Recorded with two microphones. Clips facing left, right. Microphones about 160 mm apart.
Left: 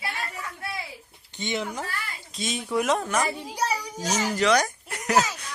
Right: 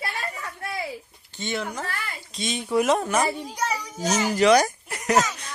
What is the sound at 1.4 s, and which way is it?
Speech, 15° left (ahead or behind).